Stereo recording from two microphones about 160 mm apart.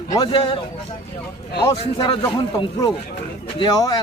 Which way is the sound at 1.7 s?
35° left (ahead or behind).